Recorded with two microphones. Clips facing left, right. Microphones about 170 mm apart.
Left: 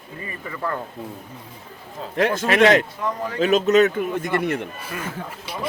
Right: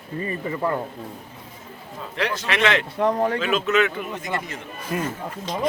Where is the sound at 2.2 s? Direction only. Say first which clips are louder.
Left 7 dB; 45° left (ahead or behind).